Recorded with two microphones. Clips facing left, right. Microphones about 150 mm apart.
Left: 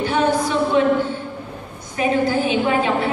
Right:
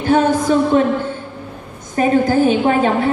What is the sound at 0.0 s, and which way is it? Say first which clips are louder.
Speech: right 4 dB; 45° right (ahead or behind).